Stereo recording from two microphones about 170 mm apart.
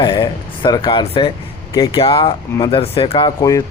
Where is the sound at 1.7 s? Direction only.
20° left (ahead or behind).